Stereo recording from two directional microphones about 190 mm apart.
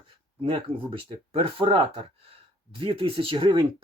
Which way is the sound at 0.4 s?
30° right (ahead or behind).